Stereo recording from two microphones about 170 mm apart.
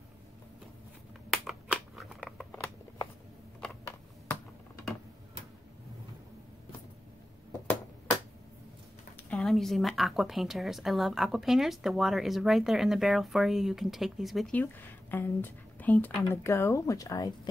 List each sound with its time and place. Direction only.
1.3 s a sound: centre (ahead or behind)
2.5 s scissors: 15° left (ahead or behind)
9.3 s a woman's voice: centre (ahead or behind); by 17.3 s 20° left (ahead or behind)